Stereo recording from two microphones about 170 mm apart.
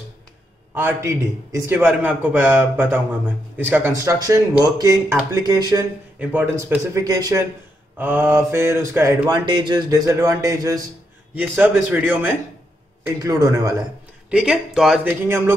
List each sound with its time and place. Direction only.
0.7 s a man's voice: 15° right (ahead or behind)
6.1 s a man's voice: 10° right (ahead or behind)
11.3 s a man's voice: 10° right (ahead or behind)
13.2 s a man's voice: 20° right (ahead or behind)
14.3 s speech: 5° right (ahead or behind)